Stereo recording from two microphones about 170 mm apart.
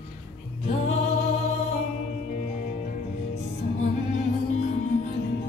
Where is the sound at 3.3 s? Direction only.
45° left (ahead or behind).